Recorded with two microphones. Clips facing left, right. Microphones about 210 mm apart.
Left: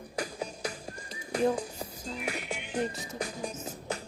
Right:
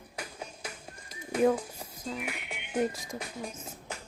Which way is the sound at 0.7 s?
70° left (ahead or behind).